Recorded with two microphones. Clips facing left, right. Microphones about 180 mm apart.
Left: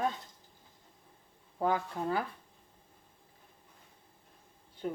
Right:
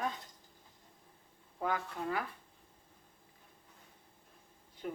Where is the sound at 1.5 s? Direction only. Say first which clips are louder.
Left 5 dB; 30° left (ahead or behind).